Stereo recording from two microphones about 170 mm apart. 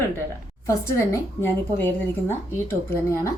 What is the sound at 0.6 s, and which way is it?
A woman's voice, 15° left (ahead or behind).